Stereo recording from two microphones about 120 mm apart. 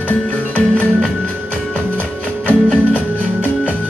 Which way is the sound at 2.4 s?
10° left (ahead or behind).